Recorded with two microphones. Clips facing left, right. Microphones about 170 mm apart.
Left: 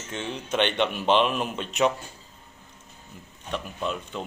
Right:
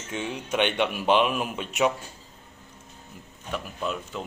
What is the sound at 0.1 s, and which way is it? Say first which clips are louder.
Speech: even; 10° right (ahead or behind).